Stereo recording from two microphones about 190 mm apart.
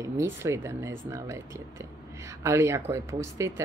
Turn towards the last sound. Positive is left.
turn(degrees=-15)  # may be behind; listen again after turning